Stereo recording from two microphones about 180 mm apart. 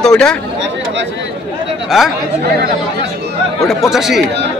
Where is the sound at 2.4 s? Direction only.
65° right (ahead or behind).